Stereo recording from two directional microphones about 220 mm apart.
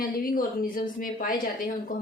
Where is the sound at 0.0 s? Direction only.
40° left (ahead or behind).